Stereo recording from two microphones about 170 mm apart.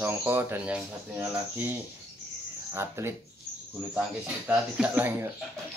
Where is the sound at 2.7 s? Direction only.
15° right (ahead or behind).